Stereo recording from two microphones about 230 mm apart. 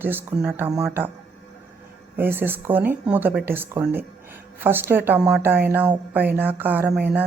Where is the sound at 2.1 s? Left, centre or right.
Centre.